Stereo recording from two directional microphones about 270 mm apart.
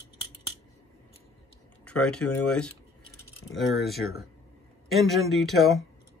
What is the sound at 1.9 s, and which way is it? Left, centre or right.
Speech, centre.